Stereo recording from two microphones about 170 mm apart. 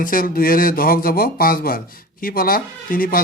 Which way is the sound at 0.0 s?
55° left (ahead or behind).